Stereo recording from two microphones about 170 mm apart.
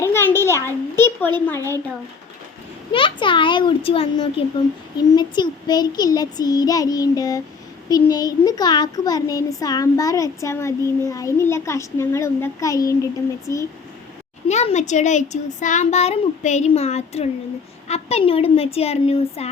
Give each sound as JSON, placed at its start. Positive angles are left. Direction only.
{"t": 0.0, "sound": "a sound", "side_deg": 15}
{"t": 2.9, "sound": "a child's voice", "side_deg": 30}
{"t": 14.4, "sound": "a child's voice", "side_deg": 40}